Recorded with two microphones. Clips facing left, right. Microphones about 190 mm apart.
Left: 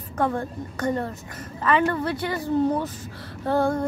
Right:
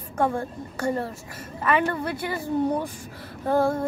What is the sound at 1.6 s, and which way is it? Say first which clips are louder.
Speech: left 2 dB; 15° right (ahead or behind).